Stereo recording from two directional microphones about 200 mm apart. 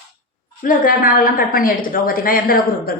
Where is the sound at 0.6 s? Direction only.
45° left (ahead or behind).